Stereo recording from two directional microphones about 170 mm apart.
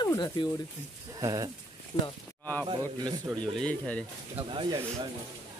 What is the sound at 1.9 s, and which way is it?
Speech, 35° left (ahead or behind).